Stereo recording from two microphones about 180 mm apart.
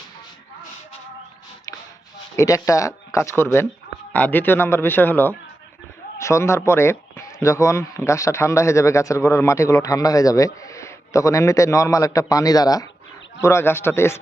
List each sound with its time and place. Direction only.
2.3 s speech: 15° left (ahead or behind)